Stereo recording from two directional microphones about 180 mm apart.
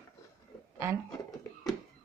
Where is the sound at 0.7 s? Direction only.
15° right (ahead or behind).